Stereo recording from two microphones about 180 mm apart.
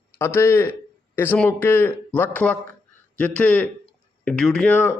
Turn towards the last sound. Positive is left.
turn(degrees=10)  # may be behind; listen again after turning